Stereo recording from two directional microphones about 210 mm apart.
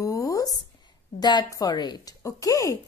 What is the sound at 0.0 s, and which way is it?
A woman's voice, 15° left (ahead or behind).